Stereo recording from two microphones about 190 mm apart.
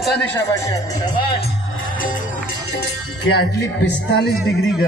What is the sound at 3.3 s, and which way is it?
Speech, 60° left (ahead or behind).